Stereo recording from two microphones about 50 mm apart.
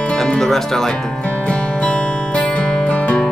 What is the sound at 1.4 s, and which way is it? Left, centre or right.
Music, left.